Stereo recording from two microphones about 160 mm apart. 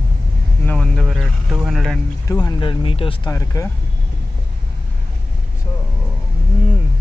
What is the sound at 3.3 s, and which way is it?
Speech, 20° left (ahead or behind).